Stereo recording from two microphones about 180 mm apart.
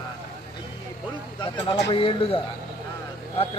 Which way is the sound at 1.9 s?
30° left (ahead or behind).